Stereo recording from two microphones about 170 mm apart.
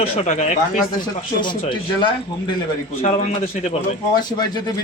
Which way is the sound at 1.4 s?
25° left (ahead or behind).